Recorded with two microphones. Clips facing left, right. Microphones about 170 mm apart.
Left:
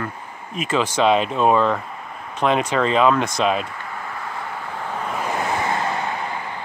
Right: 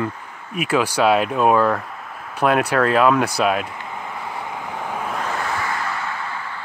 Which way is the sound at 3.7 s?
20° right (ahead or behind).